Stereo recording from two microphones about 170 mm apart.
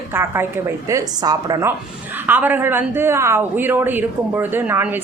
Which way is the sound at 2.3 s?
10° right (ahead or behind).